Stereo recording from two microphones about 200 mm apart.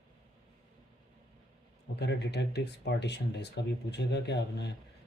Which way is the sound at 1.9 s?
60° left (ahead or behind).